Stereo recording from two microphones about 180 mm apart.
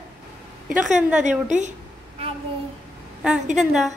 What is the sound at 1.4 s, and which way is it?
Speech, 40° right (ahead or behind).